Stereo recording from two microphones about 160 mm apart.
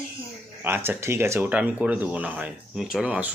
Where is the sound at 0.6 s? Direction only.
15° right (ahead or behind).